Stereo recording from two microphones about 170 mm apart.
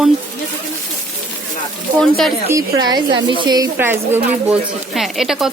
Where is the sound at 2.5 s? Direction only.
25° right (ahead or behind).